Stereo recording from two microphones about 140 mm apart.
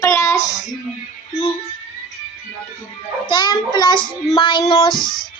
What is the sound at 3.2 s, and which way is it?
Child singing, 30° left (ahead or behind).